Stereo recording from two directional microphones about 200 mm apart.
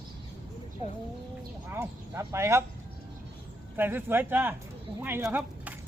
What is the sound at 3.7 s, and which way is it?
Speech, 10° right (ahead or behind).